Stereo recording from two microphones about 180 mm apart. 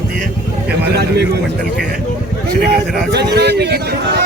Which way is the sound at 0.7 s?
65° right (ahead or behind).